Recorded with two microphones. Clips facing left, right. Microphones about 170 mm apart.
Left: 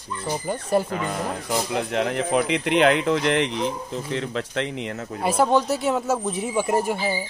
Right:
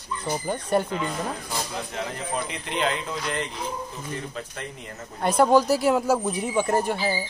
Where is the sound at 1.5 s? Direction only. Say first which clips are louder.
Left 7 dB; 70° left (ahead or behind).